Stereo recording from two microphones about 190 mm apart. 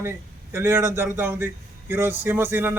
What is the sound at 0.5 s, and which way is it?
A man's voice, 15° right (ahead or behind).